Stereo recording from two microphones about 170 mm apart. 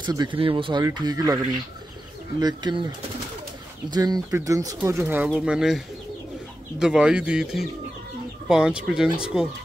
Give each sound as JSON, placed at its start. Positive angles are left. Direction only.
{"t": 0.0, "sound": "speech", "side_deg": -25}
{"t": 2.4, "sound": "speech", "side_deg": -25}
{"t": 3.9, "sound": "speech", "side_deg": -20}
{"t": 6.8, "sound": "speech", "side_deg": -5}